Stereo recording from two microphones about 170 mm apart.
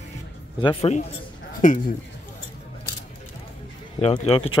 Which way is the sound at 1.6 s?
50° left (ahead or behind).